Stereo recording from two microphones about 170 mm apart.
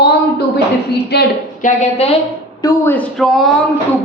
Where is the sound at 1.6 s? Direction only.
40° left (ahead or behind).